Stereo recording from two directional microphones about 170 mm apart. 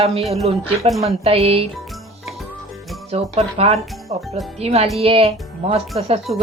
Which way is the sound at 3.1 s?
35° right (ahead or behind).